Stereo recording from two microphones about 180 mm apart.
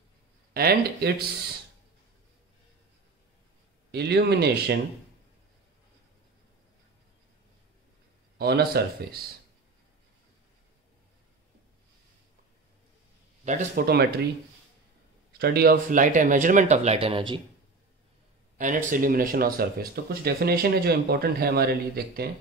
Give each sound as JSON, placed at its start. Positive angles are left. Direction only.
{"t": 0.5, "sound": "speech", "side_deg": -60}
{"t": 3.9, "sound": "speech", "side_deg": -65}
{"t": 8.4, "sound": "speech", "side_deg": -60}
{"t": 13.4, "sound": "speech", "side_deg": -40}
{"t": 15.3, "sound": "speech", "side_deg": -60}
{"t": 18.6, "sound": "speech", "side_deg": -45}